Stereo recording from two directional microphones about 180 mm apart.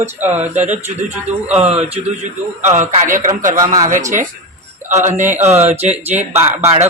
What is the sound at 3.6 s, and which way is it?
Speech, 20° right (ahead or behind).